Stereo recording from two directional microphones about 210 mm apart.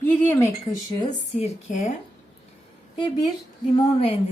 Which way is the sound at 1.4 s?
35° left (ahead or behind).